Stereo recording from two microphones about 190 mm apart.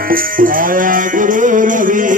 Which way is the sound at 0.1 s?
50° right (ahead or behind).